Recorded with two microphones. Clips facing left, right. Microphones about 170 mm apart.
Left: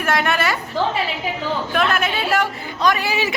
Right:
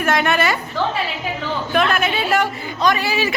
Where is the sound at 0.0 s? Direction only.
5° left (ahead or behind).